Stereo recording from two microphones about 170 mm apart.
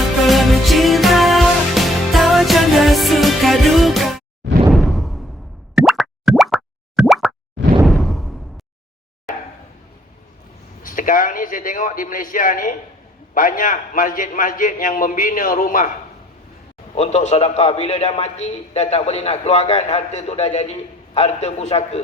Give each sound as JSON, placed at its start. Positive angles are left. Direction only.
{"t": 0.0, "sound": "music", "side_deg": 0}
{"t": 4.7, "sound": "whoosh", "side_deg": 0}
{"t": 5.7, "sound": "plop", "side_deg": 0}
{"t": 7.9, "sound": "whoosh", "side_deg": 0}
{"t": 10.8, "sound": "a man's voice", "side_deg": 55}
{"t": 16.9, "sound": "a man's voice", "side_deg": 40}